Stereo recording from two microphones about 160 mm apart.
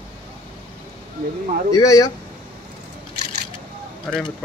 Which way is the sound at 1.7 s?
20° left (ahead or behind).